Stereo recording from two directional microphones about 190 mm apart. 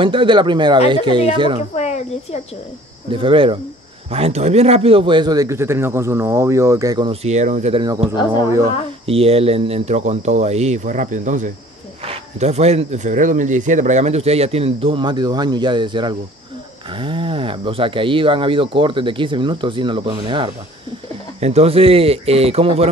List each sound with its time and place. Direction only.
0.0 s speech: 25° right (ahead or behind)
3.1 s speech: 25° right (ahead or behind)
7.1 s speech: 35° right (ahead or behind)
8.4 s speech: 15° right (ahead or behind)
9.0 s speech: 30° right (ahead or behind)